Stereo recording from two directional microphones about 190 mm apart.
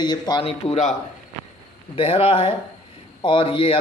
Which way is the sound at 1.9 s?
30° left (ahead or behind).